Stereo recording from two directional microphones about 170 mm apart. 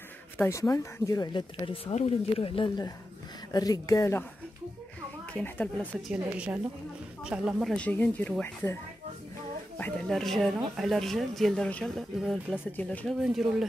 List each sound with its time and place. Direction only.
0.4 s speech: 15° left (ahead or behind); by 2.7 s 30° left (ahead or behind)
3.5 s speech: 20° left (ahead or behind)
5.3 s speech: 10° left (ahead or behind)
6.0 s speech: 5° right (ahead or behind)
7.7 s speech: 10° left (ahead or behind)
9.8 s speech: 5° left (ahead or behind)